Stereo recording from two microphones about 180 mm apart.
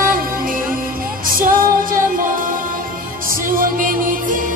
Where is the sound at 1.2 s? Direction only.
50° right (ahead or behind).